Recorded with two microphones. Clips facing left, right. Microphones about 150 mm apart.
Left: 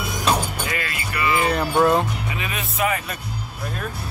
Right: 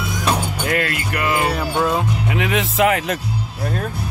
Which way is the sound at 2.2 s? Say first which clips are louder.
Right 9 dB; 70° right (ahead or behind).